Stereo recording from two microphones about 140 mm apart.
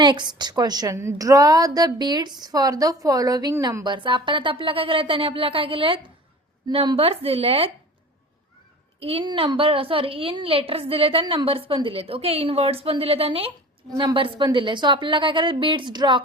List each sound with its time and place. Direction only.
0.0 s a woman's voice: 30° right (ahead or behind)
9.0 s a woman's voice: 45° right (ahead or behind)